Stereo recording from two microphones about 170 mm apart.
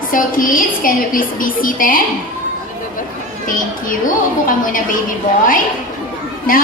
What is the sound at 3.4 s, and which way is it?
A woman's voice, 50° left (ahead or behind).